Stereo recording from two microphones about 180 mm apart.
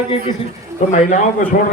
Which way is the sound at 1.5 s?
55° left (ahead or behind).